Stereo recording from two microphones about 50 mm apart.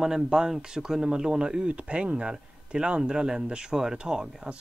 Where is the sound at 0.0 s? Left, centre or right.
Centre.